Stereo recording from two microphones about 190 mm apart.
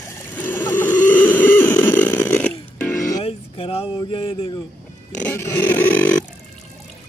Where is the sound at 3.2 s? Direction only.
30° left (ahead or behind).